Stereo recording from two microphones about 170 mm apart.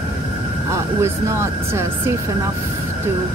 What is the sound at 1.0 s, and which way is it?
Speech, 15° right (ahead or behind).